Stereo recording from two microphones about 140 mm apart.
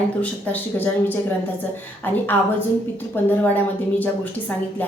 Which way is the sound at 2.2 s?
15° left (ahead or behind).